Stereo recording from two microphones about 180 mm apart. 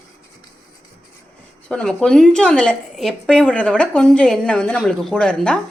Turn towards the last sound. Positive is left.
turn(degrees=5)  # may be behind; listen again after turning